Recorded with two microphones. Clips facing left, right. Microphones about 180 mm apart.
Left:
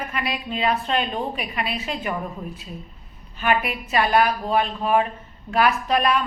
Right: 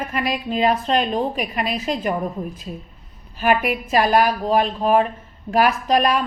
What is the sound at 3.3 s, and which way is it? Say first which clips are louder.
A woman's voice: right 4 dB; 40° right (ahead or behind).